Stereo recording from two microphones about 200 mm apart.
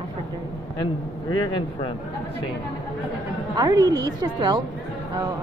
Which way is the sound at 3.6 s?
20° right (ahead or behind).